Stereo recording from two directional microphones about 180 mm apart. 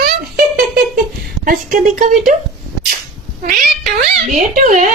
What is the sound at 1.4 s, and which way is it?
Speech, 50° right (ahead or behind).